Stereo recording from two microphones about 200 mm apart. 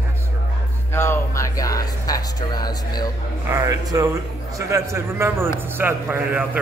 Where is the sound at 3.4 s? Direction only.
15° right (ahead or behind).